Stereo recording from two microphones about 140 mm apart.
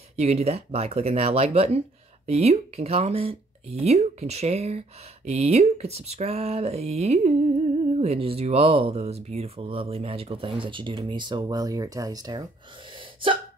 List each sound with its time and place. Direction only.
0.1 s speech: 45° right (ahead or behind); by 12.4 s 30° right (ahead or behind)
12.9 s sneeze: 35° right (ahead or behind)